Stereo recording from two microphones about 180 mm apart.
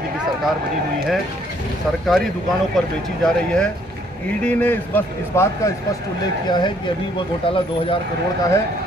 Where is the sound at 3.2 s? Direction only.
5° left (ahead or behind).